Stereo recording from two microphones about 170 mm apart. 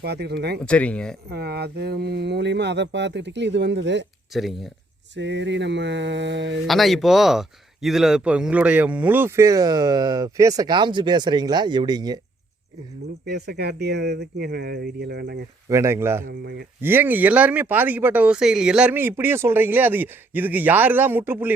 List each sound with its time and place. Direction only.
0.0 s speech: 75° right (ahead or behind)
0.6 s speech: 5° left (ahead or behind)
1.3 s speech: 70° right (ahead or behind)
4.3 s speech: centre (ahead or behind)
5.1 s speech: 90° right
6.7 s speech: centre (ahead or behind); by 12.2 s 25° right (ahead or behind)
13.2 s speech: 75° right (ahead or behind)
15.7 s speech: 15° right (ahead or behind)
16.4 s speech: 70° right (ahead or behind)
16.8 s speech: 10° right (ahead or behind)